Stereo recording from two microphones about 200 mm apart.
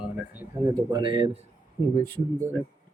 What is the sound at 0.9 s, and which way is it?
Speech, 25° right (ahead or behind).